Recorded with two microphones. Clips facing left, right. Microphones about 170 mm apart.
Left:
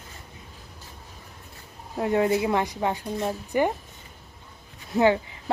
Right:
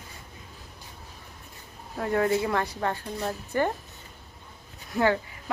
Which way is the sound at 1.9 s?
20° left (ahead or behind).